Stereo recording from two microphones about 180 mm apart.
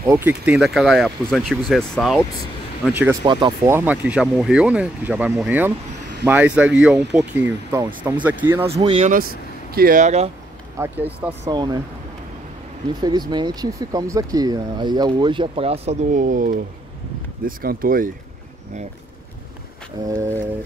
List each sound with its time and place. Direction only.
0.0 s speech: 10° right (ahead or behind)
2.9 s speech: 10° right (ahead or behind)
3.3 s speech: 25° right (ahead or behind)
3.7 s speech: 10° right (ahead or behind)
8.6 s speech: 35° right (ahead or behind)
10.8 s speech: 10° right (ahead or behind)
11.4 s speech: 25° right (ahead or behind)
13.0 s speech: 25° right (ahead or behind); by 18.1 s 50° right (ahead or behind)
20.1 s speech: 15° right (ahead or behind)